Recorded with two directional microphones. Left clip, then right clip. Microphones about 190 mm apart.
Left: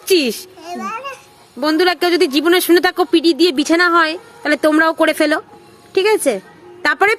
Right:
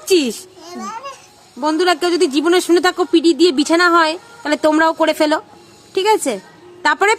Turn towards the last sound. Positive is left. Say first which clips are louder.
# even
turn(degrees=10)  # may be behind; listen again after turning